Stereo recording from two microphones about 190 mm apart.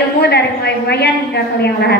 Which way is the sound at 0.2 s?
60° left (ahead or behind).